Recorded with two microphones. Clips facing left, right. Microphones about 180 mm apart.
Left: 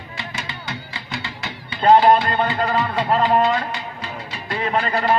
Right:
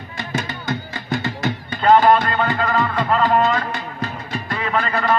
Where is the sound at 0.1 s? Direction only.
45° right (ahead or behind).